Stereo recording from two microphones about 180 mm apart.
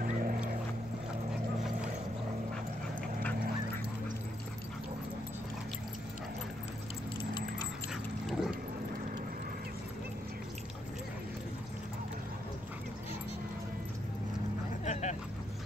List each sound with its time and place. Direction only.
0.0 s boat: 50° right (ahead or behind)
7.9 s dog: centre (ahead or behind)
14.9 s vehicle: 40° left (ahead or behind)